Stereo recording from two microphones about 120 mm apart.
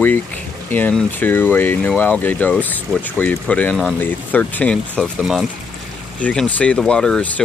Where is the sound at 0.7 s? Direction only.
15° left (ahead or behind).